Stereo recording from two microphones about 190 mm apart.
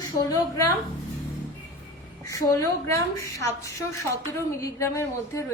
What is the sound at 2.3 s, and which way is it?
A woman's voice, 15° left (ahead or behind).